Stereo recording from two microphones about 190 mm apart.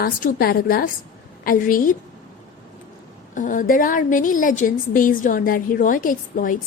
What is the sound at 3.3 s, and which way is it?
A woman's voice, 40° left (ahead or behind).